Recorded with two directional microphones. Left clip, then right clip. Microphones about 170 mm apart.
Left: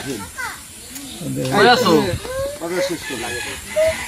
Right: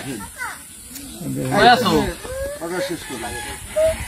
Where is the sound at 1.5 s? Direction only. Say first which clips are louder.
Even; 40° right (ahead or behind).